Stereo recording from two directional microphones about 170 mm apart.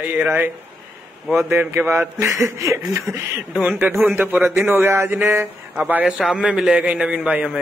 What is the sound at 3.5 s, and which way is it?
A man's voice, 5° right (ahead or behind).